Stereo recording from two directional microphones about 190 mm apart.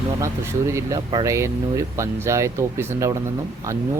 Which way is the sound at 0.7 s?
15° right (ahead or behind).